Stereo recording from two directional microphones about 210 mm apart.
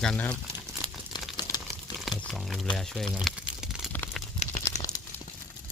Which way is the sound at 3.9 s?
10° left (ahead or behind).